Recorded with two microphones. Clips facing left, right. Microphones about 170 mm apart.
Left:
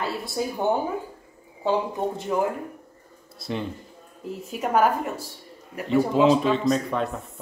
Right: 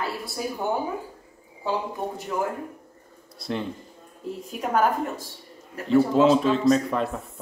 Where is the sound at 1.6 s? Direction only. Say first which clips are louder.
Left 4 dB; 25° left (ahead or behind).